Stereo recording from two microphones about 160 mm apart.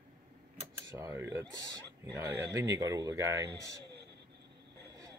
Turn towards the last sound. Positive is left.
turn(degrees=-20)  # may be behind; listen again after turning